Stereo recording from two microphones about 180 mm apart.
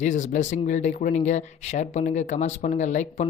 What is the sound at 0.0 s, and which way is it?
Speech, 45° left (ahead or behind).